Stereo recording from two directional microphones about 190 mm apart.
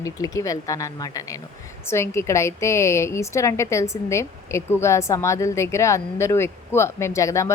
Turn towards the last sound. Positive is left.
turn(degrees=15)  # may be behind; listen again after turning